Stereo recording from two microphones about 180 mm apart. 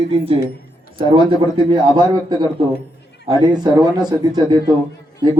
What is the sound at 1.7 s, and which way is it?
A man's voice, 25° right (ahead or behind).